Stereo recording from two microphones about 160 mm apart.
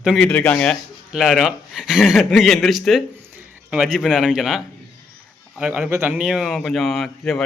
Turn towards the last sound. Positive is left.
turn(degrees=0)  # may be behind; listen again after turning